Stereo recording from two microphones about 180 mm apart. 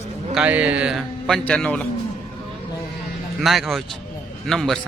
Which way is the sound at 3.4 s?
Centre (ahead or behind).